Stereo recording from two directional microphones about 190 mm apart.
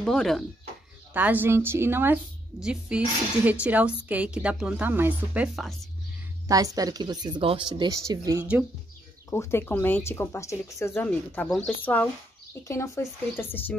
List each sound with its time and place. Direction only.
0.0 s speech: centre (ahead or behind)
1.1 s speech: 10° right (ahead or behind)
6.4 s speech: 20° right (ahead or behind)
9.3 s speech: 15° left (ahead or behind)